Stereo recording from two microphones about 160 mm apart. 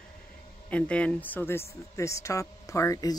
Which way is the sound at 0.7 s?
10° left (ahead or behind).